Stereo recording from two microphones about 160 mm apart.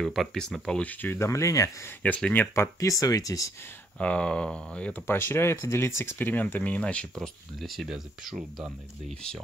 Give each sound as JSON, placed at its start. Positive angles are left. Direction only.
{"t": 0.0, "sound": "speech", "side_deg": 0}
{"t": 2.0, "sound": "speech", "side_deg": 10}
{"t": 4.0, "sound": "speech", "side_deg": 5}